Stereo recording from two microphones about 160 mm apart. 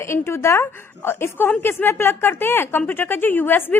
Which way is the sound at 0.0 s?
15° left (ahead or behind).